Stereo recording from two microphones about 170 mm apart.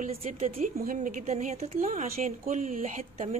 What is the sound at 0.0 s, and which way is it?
A woman's voice, 40° right (ahead or behind).